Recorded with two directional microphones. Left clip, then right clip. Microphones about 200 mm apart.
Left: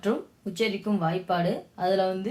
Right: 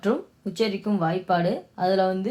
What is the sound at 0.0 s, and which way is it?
Speech, 40° right (ahead or behind).